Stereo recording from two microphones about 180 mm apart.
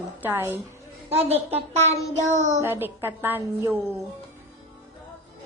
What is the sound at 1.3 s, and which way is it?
Speech, 35° right (ahead or behind).